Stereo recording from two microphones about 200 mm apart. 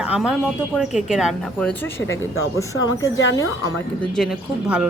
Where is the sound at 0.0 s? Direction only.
5° right (ahead or behind); by 2.1 s 10° left (ahead or behind).